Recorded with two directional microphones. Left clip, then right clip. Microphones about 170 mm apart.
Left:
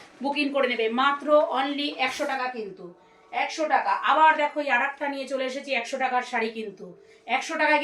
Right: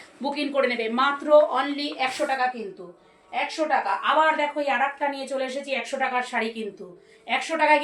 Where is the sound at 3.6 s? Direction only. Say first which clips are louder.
Right 1 dB; 15° right (ahead or behind).